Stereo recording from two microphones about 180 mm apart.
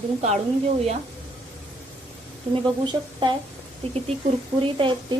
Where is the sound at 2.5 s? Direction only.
25° right (ahead or behind).